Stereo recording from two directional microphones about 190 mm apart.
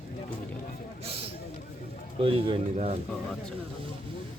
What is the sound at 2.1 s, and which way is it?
Speech, 30° right (ahead or behind).